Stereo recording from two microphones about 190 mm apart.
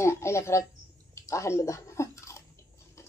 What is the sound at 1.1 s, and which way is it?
Chewing, 15° left (ahead or behind).